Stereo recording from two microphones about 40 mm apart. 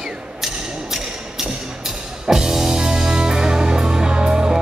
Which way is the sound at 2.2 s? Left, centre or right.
Centre.